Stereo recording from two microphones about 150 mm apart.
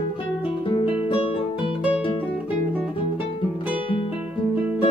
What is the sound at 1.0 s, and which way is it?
Music, 35° left (ahead or behind).